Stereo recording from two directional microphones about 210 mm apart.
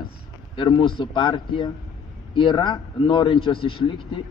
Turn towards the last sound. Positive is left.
turn(degrees=25)  # may be behind; listen again after turning